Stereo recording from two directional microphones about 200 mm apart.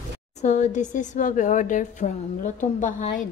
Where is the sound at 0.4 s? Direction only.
35° left (ahead or behind).